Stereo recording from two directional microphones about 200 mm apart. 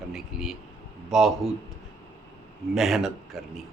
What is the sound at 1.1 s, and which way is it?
Speech, centre (ahead or behind).